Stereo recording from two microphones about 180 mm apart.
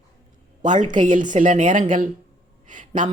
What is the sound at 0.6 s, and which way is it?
Speech, 45° right (ahead or behind).